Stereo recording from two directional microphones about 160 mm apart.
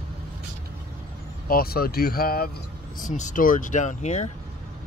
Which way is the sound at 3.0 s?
50° left (ahead or behind).